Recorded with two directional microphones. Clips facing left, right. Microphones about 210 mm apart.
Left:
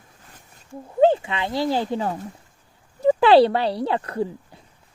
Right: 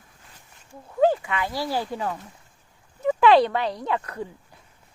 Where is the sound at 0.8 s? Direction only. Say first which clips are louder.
Left 3 dB; 25° left (ahead or behind).